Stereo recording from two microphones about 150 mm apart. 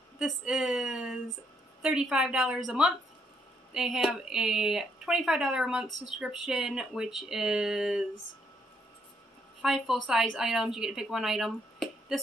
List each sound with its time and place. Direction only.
0.2 s speech: 5° right (ahead or behind)
9.6 s a woman's voice: centre (ahead or behind)